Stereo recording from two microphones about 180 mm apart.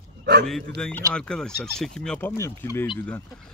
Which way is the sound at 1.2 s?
5° left (ahead or behind).